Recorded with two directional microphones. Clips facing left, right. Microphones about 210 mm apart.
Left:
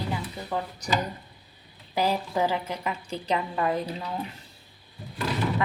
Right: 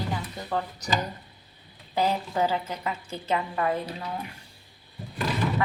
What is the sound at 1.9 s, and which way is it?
Speech, 15° left (ahead or behind).